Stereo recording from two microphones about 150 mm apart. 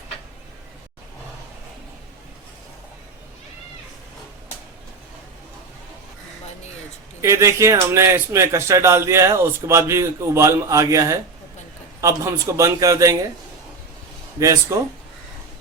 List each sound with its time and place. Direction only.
7.2 s speech: 20° right (ahead or behind)
14.3 s speech: 20° right (ahead or behind)